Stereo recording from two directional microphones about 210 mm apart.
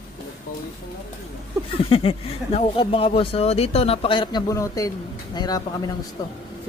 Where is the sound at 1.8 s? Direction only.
25° left (ahead or behind).